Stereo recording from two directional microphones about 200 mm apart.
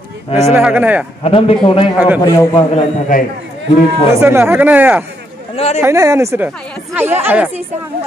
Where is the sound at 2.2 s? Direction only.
20° left (ahead or behind); by 3.2 s 35° left (ahead or behind).